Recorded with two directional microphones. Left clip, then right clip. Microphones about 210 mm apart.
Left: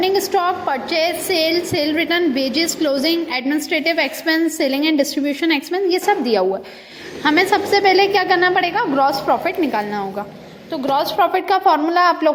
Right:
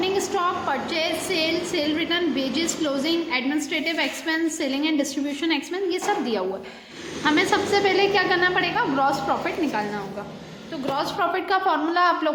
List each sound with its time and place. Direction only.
0.0 s a woman's voice: 30° left (ahead or behind)